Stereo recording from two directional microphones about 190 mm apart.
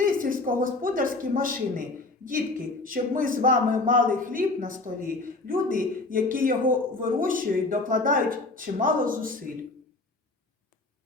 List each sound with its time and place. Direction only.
0.0 s speech: 45° right (ahead or behind)